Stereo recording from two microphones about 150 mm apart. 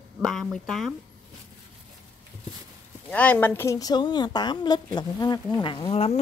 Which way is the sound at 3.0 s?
10° left (ahead or behind).